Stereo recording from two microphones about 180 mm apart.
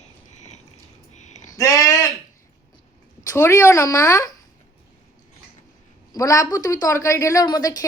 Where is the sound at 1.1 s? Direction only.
40° left (ahead or behind).